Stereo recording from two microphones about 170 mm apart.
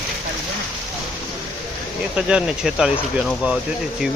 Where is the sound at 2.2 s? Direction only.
5° right (ahead or behind).